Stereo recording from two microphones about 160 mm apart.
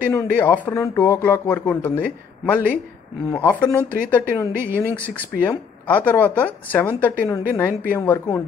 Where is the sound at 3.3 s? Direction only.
10° left (ahead or behind).